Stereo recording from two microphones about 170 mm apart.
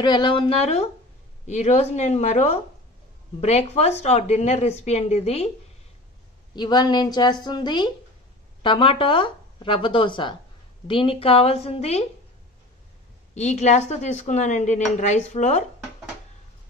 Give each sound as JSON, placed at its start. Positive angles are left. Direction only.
{"t": 0.0, "sound": "a woman's voice", "side_deg": 25}
{"t": 6.5, "sound": "a woman's voice", "side_deg": 25}
{"t": 13.3, "sound": "speech", "side_deg": 40}